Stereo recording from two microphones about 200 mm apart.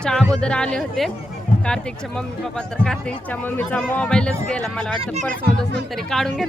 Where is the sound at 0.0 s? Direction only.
5° left (ahead or behind).